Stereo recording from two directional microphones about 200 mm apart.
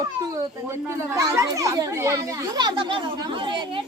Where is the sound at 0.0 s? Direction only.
15° right (ahead or behind).